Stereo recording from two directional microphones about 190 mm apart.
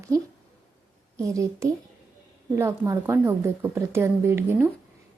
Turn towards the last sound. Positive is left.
turn(degrees=-10)  # may be behind; listen again after turning